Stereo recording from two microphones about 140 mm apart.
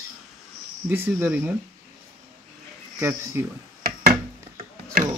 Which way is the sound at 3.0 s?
20° right (ahead or behind).